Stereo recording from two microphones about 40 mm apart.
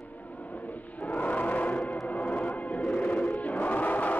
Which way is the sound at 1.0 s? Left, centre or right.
Left.